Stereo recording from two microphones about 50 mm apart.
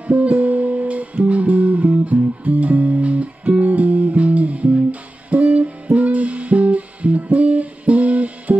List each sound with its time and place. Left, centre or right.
0.0 s music: right